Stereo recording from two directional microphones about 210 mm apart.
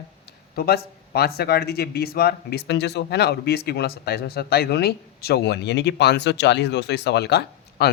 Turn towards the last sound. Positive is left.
turn(degrees=50)  # may be behind; listen again after turning